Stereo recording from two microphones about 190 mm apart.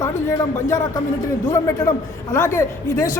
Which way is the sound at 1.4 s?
15° left (ahead or behind).